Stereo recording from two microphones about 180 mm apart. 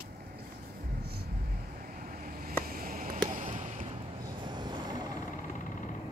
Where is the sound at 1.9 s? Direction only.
50° right (ahead or behind).